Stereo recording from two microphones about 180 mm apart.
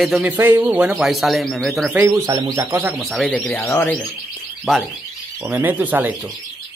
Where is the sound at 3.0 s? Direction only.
Centre (ahead or behind).